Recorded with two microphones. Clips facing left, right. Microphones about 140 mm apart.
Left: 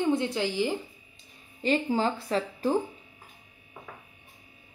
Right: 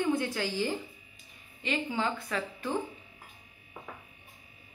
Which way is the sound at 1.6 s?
40° left (ahead or behind).